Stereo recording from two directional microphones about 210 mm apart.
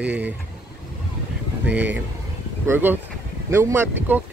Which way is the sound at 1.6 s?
5° right (ahead or behind).